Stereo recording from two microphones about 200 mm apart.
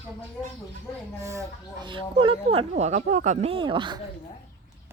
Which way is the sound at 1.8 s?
25° right (ahead or behind).